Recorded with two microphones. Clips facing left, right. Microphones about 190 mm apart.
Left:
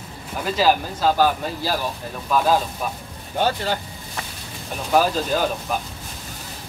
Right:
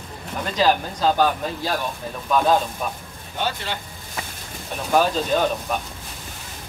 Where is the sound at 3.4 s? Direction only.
40° left (ahead or behind).